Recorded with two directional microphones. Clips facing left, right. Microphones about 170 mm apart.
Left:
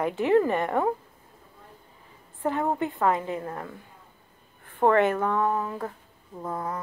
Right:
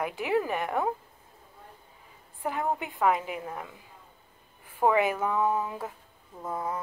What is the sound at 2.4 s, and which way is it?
A woman's voice, 5° right (ahead or behind).